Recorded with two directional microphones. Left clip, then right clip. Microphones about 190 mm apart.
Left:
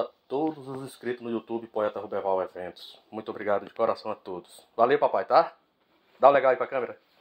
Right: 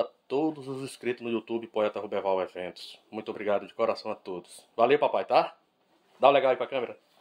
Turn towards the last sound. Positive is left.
turn(degrees=-20)  # may be behind; listen again after turning